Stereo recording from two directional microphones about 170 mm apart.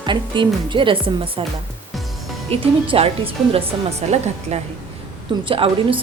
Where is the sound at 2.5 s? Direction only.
35° right (ahead or behind).